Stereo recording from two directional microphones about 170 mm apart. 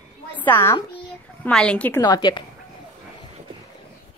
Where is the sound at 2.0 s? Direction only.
25° left (ahead or behind).